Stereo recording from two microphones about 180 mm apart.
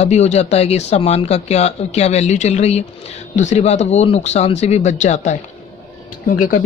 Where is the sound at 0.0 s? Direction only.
40° left (ahead or behind).